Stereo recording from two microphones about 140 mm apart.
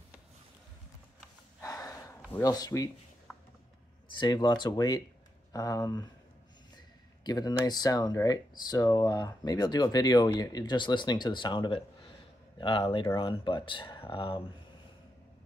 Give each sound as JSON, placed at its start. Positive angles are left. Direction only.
{"t": 1.6, "sound": "snort", "side_deg": 25}
{"t": 2.4, "sound": "speech", "side_deg": 25}
{"t": 3.3, "sound": "a sound", "side_deg": 5}
{"t": 4.2, "sound": "speech", "side_deg": 30}
{"t": 7.2, "sound": "speech", "side_deg": 30}